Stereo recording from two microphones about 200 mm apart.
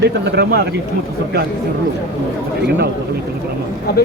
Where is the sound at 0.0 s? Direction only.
55° right (ahead or behind).